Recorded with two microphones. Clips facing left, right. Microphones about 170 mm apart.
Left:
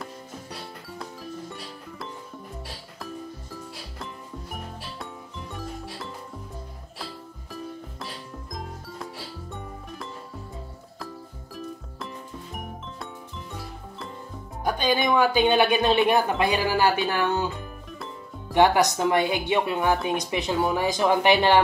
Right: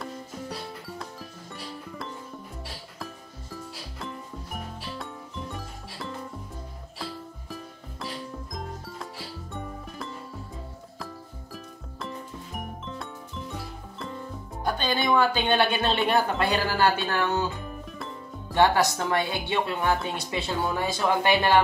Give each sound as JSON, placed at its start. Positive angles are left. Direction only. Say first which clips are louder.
{"t": 0.0, "sound": "music", "louder": "right 3 dB", "side_deg": 0}
{"t": 5.5, "sound": "music", "louder": "left 4 dB", "side_deg": 0}
{"t": 8.5, "sound": "music", "louder": "left 2 dB", "side_deg": 0}
{"t": 12.5, "sound": "music", "louder": "right 3 dB", "side_deg": 0}
{"t": 14.6, "sound": "speech", "louder": "left 3 dB", "side_deg": 15}
{"t": 17.6, "sound": "music", "louder": "right 1 dB", "side_deg": 0}
{"t": 18.5, "sound": "speech", "louder": "left 2 dB", "side_deg": 15}